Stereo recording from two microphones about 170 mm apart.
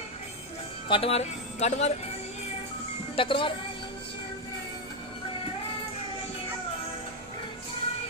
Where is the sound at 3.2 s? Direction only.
30° left (ahead or behind).